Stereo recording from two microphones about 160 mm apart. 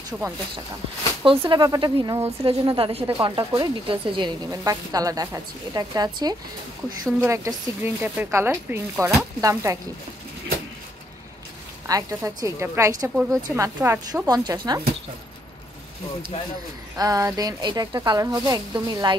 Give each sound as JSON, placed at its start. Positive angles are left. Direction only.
{"t": 0.1, "sound": "speech", "side_deg": -5}
{"t": 1.2, "sound": "speech", "side_deg": -35}
{"t": 2.4, "sound": "speech", "side_deg": -30}
{"t": 11.9, "sound": "speech", "side_deg": -20}
{"t": 14.2, "sound": "speech", "side_deg": -25}
{"t": 16.9, "sound": "speech", "side_deg": -20}